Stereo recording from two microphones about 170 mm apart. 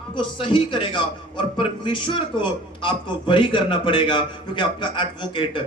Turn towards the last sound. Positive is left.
turn(degrees=30)  # may be behind; listen again after turning